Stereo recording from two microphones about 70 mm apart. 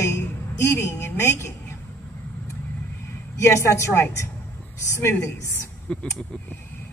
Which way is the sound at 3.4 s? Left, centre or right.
Left.